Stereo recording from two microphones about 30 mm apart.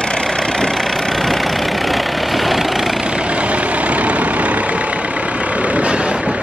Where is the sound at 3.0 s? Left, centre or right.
Right.